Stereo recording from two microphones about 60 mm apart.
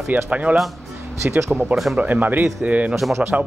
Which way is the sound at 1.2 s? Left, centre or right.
Right.